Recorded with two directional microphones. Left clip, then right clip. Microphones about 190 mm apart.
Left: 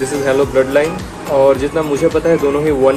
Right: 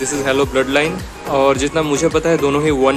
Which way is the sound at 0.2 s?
35° right (ahead or behind).